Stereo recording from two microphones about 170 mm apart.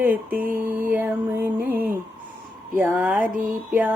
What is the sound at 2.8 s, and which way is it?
Mantra, 10° right (ahead or behind).